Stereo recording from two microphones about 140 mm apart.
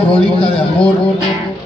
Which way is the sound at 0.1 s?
40° left (ahead or behind).